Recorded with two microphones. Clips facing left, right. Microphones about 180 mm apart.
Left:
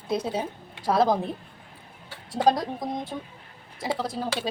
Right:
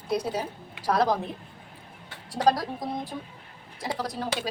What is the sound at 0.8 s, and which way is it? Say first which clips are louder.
Speech: left 2 dB; 25° left (ahead or behind).